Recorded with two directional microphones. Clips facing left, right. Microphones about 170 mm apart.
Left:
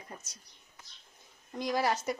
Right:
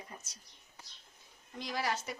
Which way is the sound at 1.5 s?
45° left (ahead or behind).